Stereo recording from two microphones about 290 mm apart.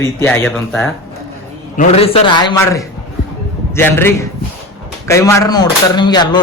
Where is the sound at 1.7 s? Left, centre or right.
Left.